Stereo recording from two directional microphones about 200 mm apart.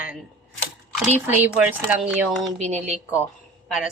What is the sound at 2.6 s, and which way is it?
Speech, 35° right (ahead or behind).